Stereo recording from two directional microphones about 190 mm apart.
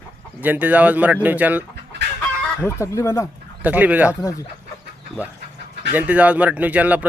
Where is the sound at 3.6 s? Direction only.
10° right (ahead or behind).